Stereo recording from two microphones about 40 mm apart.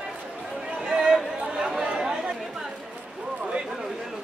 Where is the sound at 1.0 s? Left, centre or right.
Centre.